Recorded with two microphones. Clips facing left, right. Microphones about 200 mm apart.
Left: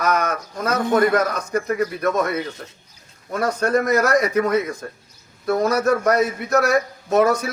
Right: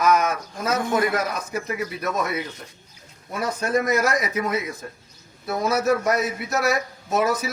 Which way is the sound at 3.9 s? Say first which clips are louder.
Left 5 dB; 45° left (ahead or behind).